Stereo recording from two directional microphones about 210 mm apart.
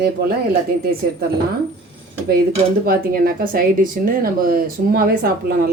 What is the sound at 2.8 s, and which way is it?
Speech, 45° right (ahead or behind).